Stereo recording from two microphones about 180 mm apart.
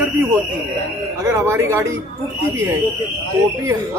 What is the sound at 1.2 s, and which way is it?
Speech, 15° right (ahead or behind).